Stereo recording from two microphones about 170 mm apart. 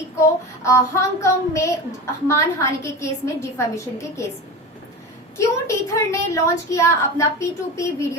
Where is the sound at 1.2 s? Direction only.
15° left (ahead or behind).